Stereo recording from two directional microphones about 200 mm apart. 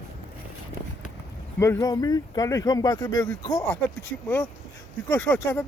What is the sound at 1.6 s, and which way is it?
Speech, 15° left (ahead or behind).